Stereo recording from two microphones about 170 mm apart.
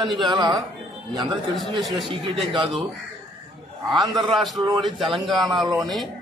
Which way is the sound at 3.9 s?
Centre (ahead or behind).